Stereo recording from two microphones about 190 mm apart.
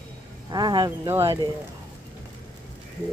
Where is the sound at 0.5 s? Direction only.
20° right (ahead or behind).